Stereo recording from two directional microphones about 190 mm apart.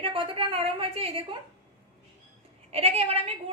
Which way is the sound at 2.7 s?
35° right (ahead or behind).